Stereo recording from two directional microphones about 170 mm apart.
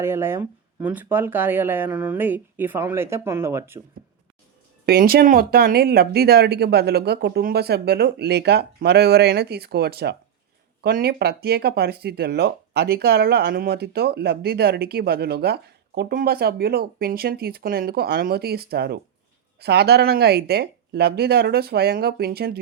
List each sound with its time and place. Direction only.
0.0 s speech: 15° right (ahead or behind)
4.9 s speech: 65° right (ahead or behind)